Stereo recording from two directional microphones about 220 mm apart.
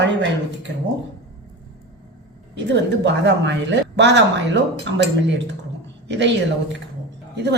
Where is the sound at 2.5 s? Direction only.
55° right (ahead or behind).